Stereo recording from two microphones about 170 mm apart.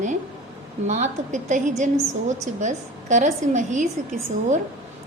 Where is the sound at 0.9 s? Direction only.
45° right (ahead or behind).